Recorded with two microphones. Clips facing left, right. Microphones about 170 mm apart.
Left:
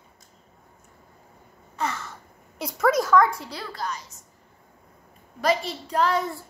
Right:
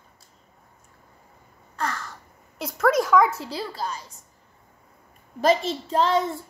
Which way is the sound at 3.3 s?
25° right (ahead or behind).